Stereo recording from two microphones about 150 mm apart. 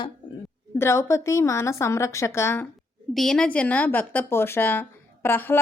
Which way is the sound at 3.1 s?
5° left (ahead or behind).